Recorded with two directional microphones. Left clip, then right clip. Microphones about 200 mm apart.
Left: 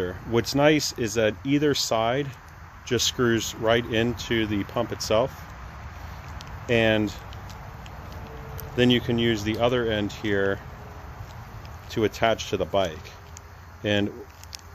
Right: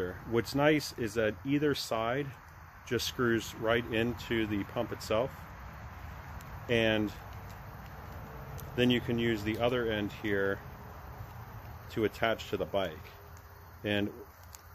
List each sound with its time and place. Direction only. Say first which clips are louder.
0.0 s speech: left 7 dB; 25° left (ahead or behind)
6.7 s speech: left 7 dB; 25° left (ahead or behind)
8.7 s speech: left 8 dB; 25° left (ahead or behind)
11.9 s speech: left 8 dB; 25° left (ahead or behind)